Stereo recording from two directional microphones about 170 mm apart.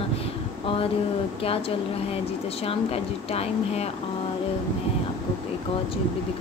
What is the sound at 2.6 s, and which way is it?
A woman's voice, 35° left (ahead or behind).